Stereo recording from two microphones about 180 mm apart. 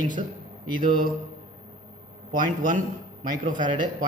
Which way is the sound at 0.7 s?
50° right (ahead or behind).